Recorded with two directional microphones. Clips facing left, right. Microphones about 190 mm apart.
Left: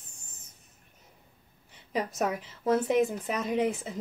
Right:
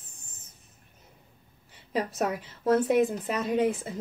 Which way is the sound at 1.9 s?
Centre (ahead or behind).